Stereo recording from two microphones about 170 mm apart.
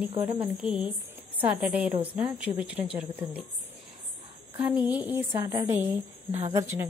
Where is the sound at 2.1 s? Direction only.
5° right (ahead or behind).